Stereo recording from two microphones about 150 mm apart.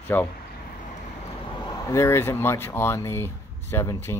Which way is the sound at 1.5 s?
30° left (ahead or behind).